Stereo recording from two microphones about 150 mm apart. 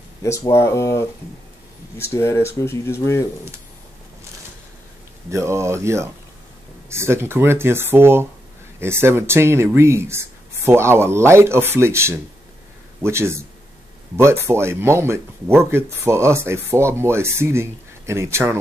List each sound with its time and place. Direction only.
0.2 s speech: 20° left (ahead or behind)
5.3 s speech: 20° right (ahead or behind)